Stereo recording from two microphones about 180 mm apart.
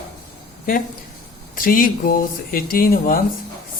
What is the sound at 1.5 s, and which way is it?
Speech, 50° left (ahead or behind).